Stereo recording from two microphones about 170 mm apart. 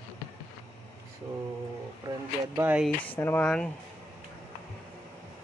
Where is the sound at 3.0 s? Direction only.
10° left (ahead or behind).